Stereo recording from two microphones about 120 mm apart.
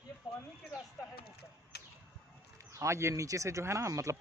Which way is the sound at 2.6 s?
25° right (ahead or behind).